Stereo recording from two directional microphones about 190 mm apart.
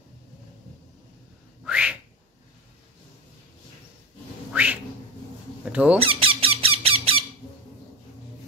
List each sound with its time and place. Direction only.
1.6 s whistling: 5° right (ahead or behind)
4.5 s a sound: 5° right (ahead or behind)
5.7 s speech: 5° right (ahead or behind)
5.9 s squeak: 30° right (ahead or behind)